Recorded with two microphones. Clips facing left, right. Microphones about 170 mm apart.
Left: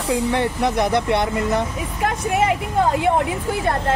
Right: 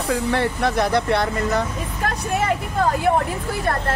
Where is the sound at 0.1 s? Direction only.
15° left (ahead or behind).